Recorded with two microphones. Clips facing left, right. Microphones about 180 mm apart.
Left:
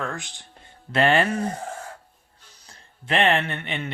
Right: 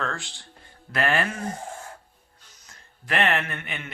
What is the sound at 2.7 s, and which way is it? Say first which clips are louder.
Speech: left 3 dB; 25° left (ahead or behind).